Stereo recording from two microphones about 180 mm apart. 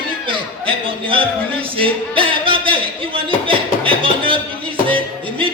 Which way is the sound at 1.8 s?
30° right (ahead or behind).